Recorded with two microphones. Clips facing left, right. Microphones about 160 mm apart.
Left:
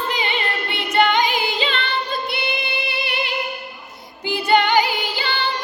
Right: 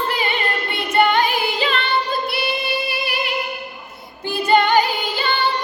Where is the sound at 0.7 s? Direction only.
15° left (ahead or behind).